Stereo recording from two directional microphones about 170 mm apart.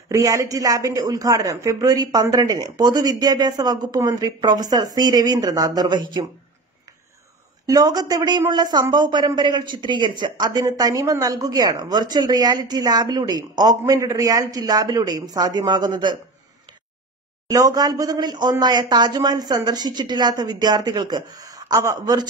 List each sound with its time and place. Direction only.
0.1 s a woman's voice: 20° right (ahead or behind)
7.6 s a woman's voice: 20° right (ahead or behind)
17.5 s a woman's voice: 20° right (ahead or behind)